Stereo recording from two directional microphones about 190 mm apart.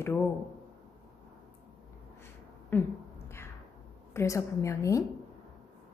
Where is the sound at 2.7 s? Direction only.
10° left (ahead or behind).